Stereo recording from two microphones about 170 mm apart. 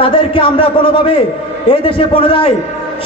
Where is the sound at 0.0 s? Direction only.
30° left (ahead or behind).